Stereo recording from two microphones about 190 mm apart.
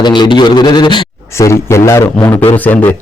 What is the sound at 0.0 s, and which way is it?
A man's voice, 25° left (ahead or behind).